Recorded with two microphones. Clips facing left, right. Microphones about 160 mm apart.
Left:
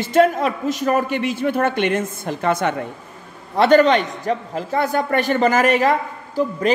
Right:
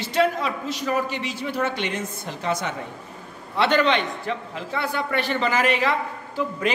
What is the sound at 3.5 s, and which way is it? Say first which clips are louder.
A man's voice: left 7 dB; 45° left (ahead or behind).